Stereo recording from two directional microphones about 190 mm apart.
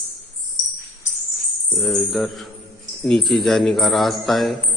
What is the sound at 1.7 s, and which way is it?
A man's voice, centre (ahead or behind).